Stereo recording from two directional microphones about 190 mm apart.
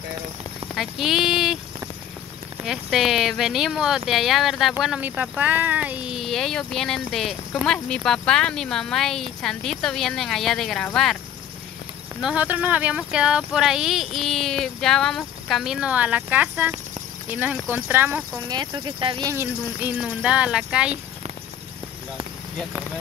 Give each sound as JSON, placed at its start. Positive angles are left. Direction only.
{"t": 0.7, "sound": "speech", "side_deg": 0}
{"t": 2.6, "sound": "speech", "side_deg": 0}
{"t": 12.2, "sound": "speech", "side_deg": -5}
{"t": 18.5, "sound": "speech", "side_deg": -25}
{"t": 19.3, "sound": "speech", "side_deg": -10}